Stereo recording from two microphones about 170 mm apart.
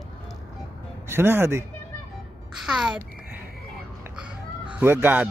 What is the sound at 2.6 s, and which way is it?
Speech, 5° right (ahead or behind).